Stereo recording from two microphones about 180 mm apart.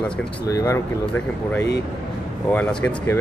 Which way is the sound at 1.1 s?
10° left (ahead or behind).